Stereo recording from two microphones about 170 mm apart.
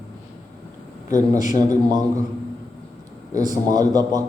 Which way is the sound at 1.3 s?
20° right (ahead or behind).